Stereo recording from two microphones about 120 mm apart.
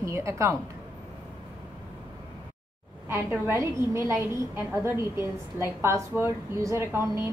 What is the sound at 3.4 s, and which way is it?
A woman's voice, 20° right (ahead or behind).